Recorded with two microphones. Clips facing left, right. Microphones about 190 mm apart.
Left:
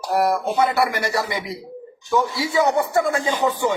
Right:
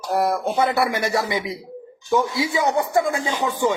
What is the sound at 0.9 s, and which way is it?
Speech, 20° right (ahead or behind).